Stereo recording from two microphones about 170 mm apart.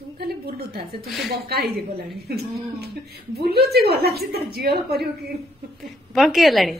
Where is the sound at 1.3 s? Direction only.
70° right (ahead or behind).